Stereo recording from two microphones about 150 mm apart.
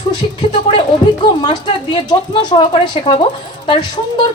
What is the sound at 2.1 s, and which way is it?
A woman's voice, 30° left (ahead or behind).